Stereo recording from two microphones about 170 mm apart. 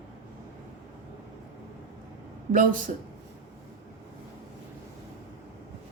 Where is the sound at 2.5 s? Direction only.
50° right (ahead or behind).